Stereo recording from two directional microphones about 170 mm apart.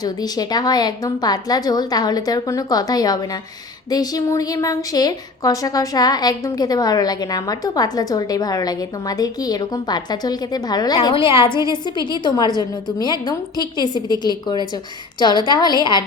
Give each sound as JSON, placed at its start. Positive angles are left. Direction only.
{"t": 0.0, "sound": "a woman's voice", "side_deg": 25}